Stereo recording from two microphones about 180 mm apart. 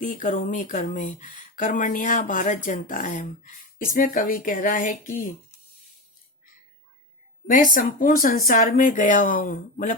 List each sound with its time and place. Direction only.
0.0 s speech: 45° left (ahead or behind)
7.4 s speech: 45° left (ahead or behind)